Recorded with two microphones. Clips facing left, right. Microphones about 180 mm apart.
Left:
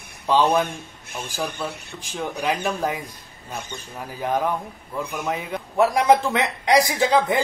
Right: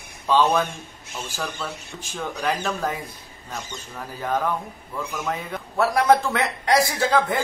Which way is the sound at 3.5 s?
55° left (ahead or behind).